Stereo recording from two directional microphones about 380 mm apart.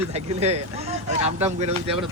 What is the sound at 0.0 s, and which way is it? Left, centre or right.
Speech, centre.